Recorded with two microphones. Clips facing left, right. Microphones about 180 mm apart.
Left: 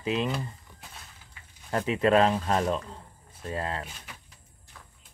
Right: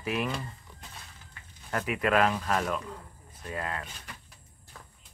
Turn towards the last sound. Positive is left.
turn(degrees=30)  # may be behind; listen again after turning